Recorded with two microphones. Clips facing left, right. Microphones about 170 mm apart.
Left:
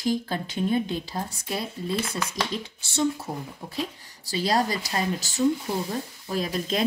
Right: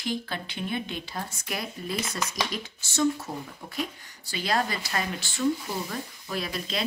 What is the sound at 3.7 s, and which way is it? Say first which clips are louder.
Speech: left 1 dB; 35° left (ahead or behind).